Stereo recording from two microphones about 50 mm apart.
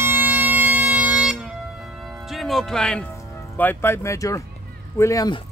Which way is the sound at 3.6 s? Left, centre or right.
Left.